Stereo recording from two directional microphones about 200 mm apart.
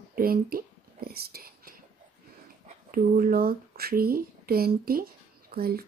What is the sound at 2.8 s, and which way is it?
Speech, 45° right (ahead or behind).